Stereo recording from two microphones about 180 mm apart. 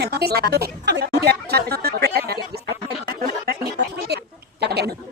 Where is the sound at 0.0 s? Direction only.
60° right (ahead or behind).